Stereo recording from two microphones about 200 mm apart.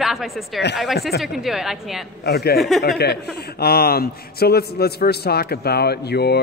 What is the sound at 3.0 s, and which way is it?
A man's voice, 55° left (ahead or behind).